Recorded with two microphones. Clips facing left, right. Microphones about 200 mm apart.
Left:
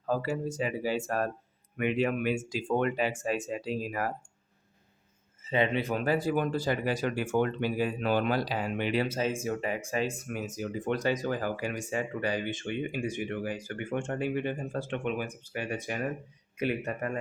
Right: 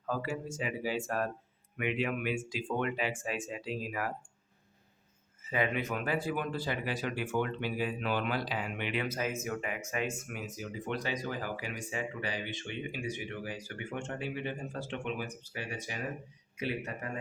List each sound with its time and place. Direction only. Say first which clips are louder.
0.1 s speech: left 5 dB; 35° left (ahead or behind)
5.4 s speech: left 4 dB; 25° left (ahead or behind); by 17.1 s 55° left (ahead or behind)